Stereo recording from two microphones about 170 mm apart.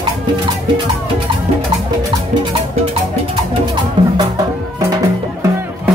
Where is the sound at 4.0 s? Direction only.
30° right (ahead or behind).